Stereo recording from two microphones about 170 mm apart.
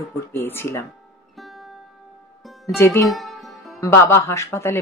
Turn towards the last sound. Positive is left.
turn(degrees=15)  # may be behind; listen again after turning